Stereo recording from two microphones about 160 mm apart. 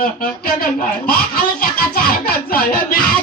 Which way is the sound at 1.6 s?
70° left (ahead or behind).